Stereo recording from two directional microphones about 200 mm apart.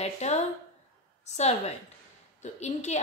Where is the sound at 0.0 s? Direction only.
35° left (ahead or behind).